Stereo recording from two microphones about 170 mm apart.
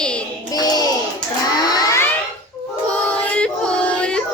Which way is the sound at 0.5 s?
25° left (ahead or behind).